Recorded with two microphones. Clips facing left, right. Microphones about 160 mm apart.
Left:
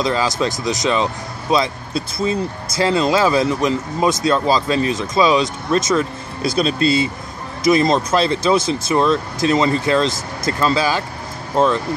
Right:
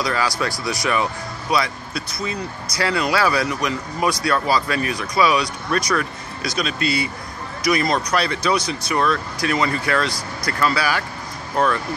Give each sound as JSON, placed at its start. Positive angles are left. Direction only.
{"t": 0.0, "sound": "speech", "side_deg": 20}